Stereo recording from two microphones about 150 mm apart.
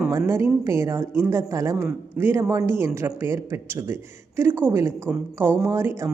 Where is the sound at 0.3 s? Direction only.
20° right (ahead or behind).